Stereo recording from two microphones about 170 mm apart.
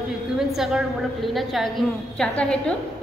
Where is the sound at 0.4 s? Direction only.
Centre (ahead or behind).